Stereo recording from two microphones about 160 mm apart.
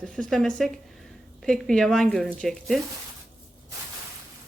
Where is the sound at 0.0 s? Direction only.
5° left (ahead or behind).